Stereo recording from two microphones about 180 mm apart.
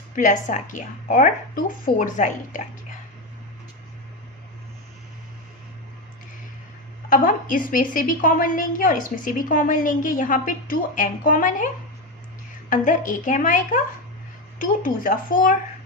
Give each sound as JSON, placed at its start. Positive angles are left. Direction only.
{"t": 0.2, "sound": "a woman's voice", "side_deg": 45}
{"t": 7.1, "sound": "a woman's voice", "side_deg": 50}
{"t": 12.7, "sound": "a woman's voice", "side_deg": 45}